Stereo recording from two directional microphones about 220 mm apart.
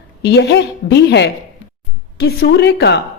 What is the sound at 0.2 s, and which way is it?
A woman's voice, 50° left (ahead or behind).